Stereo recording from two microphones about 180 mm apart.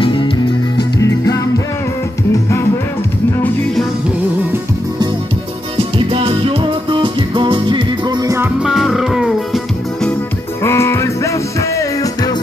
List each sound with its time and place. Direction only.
0.0 s music: 25° left (ahead or behind)
5.8 s music: 30° right (ahead or behind)
8.6 s music: centre (ahead or behind)
10.6 s music: 15° left (ahead or behind)